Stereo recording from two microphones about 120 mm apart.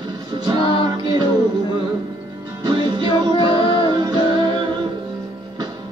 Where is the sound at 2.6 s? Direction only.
35° right (ahead or behind).